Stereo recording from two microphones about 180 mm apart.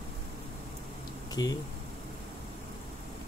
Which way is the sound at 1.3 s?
20° left (ahead or behind).